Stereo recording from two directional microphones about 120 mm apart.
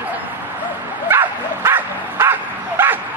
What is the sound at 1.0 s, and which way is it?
Bow-wow, 20° right (ahead or behind).